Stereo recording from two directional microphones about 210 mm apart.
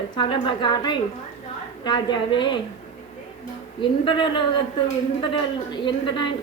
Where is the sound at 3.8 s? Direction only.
20° left (ahead or behind).